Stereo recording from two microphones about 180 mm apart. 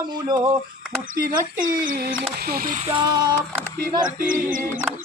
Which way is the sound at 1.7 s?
55° right (ahead or behind).